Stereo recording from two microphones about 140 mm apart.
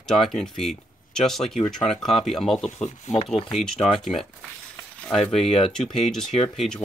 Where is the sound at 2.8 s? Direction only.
50° left (ahead or behind).